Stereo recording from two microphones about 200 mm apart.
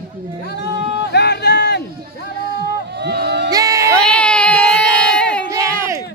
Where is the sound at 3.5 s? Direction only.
20° right (ahead or behind).